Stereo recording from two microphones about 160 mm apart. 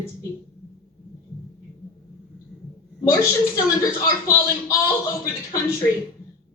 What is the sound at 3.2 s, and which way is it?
A man's voice, 20° left (ahead or behind).